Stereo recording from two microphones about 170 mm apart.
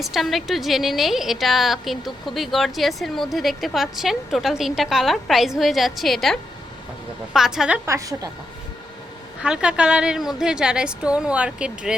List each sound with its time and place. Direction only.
0.0 s a woman's voice: centre (ahead or behind)
7.9 s a woman's voice: 20° right (ahead or behind)
9.4 s a woman's voice: 5° right (ahead or behind)